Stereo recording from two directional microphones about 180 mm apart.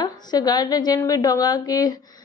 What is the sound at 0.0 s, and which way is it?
A woman's voice, 20° left (ahead or behind).